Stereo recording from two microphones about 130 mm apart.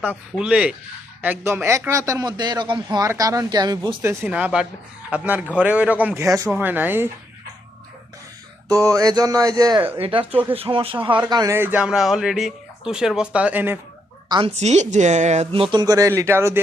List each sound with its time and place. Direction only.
0.3 s a man's voice: 5° right (ahead or behind); by 4.0 s 35° right (ahead or behind)
4.0 s a man's voice: 20° right (ahead or behind)
4.3 s a man's voice: 10° right (ahead or behind)
6.2 s a man's voice: 25° right (ahead or behind)
6.5 s a man's voice: 15° right (ahead or behind)
8.7 s a man's voice: 25° right (ahead or behind)
10.0 s speech: 40° right (ahead or behind)
11.3 s speech: 30° right (ahead or behind)
11.5 s speech: 15° right (ahead or behind)
14.4 s speech: 60° right (ahead or behind)
15.5 s a man's voice: 40° right (ahead or behind); by 16.6 s 20° right (ahead or behind)